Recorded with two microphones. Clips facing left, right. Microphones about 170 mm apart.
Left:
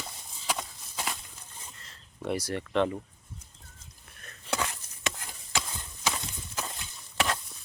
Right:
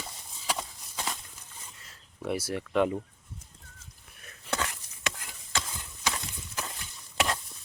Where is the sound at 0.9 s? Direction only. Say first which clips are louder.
Even; 10° left (ahead or behind).